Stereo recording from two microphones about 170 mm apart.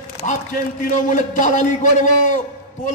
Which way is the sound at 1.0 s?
45° left (ahead or behind).